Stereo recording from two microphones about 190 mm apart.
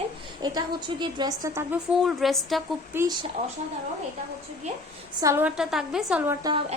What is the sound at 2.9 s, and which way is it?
Speech, 20° right (ahead or behind).